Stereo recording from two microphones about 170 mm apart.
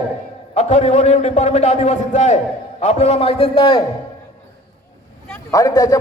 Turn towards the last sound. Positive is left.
turn(degrees=20)  # may be behind; listen again after turning